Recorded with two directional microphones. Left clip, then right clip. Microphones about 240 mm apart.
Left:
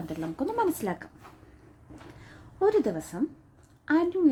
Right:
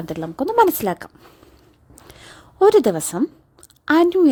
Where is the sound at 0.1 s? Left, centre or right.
Right.